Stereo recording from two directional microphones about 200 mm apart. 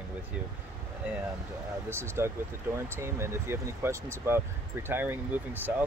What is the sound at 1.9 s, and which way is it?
Speech, 10° right (ahead or behind).